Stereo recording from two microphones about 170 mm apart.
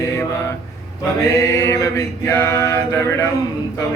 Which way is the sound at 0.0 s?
15° left (ahead or behind).